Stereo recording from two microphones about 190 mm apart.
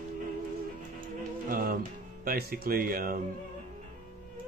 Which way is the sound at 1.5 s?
50° right (ahead or behind).